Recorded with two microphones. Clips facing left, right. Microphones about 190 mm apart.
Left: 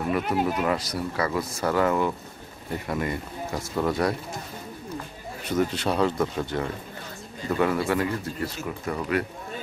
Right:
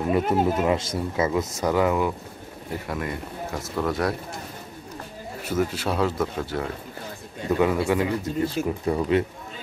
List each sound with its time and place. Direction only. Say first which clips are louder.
0.3 s speech: right 3 dB; 25° right (ahead or behind)
2.9 s speech: left 3 dB; centre (ahead or behind)
5.4 s speech: even; 5° right (ahead or behind)
8.6 s speech: right 6 dB; 25° right (ahead or behind)